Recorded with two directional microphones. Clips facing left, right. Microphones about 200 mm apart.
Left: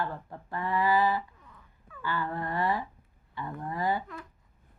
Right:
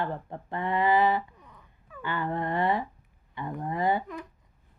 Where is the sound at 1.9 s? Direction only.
20° right (ahead or behind).